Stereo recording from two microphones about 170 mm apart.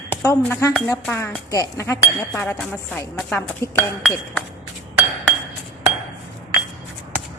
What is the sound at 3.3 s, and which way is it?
Dishes, 15° left (ahead or behind).